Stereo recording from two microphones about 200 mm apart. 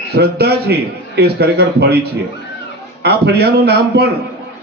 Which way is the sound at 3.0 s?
55° right (ahead or behind).